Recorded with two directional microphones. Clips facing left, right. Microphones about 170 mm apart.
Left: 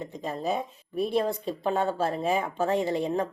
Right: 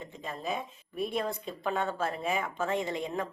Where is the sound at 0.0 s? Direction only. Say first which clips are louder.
Left 6 dB; 35° left (ahead or behind).